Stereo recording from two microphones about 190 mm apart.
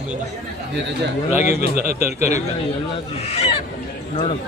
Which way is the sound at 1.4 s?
40° left (ahead or behind).